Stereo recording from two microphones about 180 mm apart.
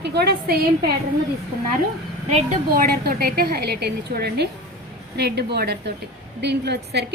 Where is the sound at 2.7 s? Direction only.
55° right (ahead or behind).